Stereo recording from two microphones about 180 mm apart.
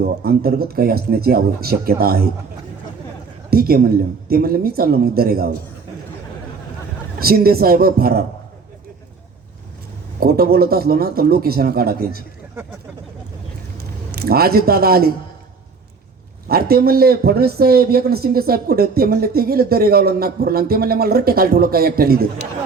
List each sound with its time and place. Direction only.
0.0 s a man's voice: 60° right (ahead or behind)
3.5 s a man's voice: 55° right (ahead or behind)
7.2 s a man's voice: 55° right (ahead or behind)
10.2 s a man's voice: 55° right (ahead or behind)
14.1 s a man's voice: 60° right (ahead or behind)
16.5 s a man's voice: 55° right (ahead or behind)